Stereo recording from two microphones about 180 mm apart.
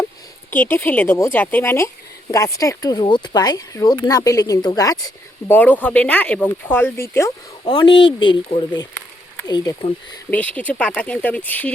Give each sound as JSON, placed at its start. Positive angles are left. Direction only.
{"t": 0.5, "sound": "speech", "side_deg": 10}
{"t": 5.5, "sound": "speech", "side_deg": 10}
{"t": 7.6, "sound": "speech", "side_deg": 25}
{"t": 10.3, "sound": "speech", "side_deg": 10}